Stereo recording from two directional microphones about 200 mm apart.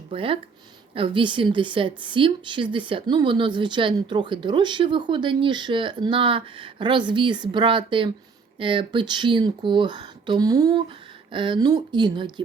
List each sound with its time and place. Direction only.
0.1 s a woman's voice: 25° right (ahead or behind)